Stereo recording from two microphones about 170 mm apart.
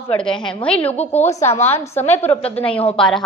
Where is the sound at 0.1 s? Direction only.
5° left (ahead or behind).